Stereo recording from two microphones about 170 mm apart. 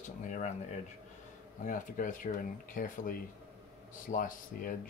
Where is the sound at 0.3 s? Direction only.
45° left (ahead or behind).